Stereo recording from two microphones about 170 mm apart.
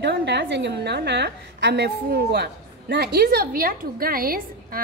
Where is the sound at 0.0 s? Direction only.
80° right.